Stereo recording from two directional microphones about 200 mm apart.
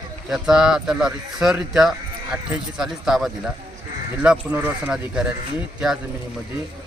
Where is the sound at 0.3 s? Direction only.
Centre (ahead or behind).